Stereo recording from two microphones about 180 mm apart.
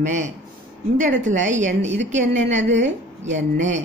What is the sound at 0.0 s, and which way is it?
A woman's voice, 40° right (ahead or behind).